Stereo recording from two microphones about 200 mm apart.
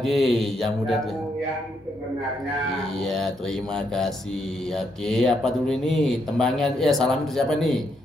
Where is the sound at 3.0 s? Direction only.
Centre (ahead or behind).